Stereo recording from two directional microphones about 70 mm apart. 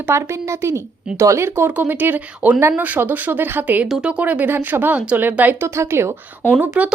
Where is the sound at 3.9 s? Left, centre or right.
Centre.